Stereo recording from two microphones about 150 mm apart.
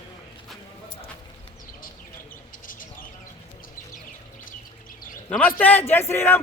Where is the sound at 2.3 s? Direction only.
65° left (ahead or behind).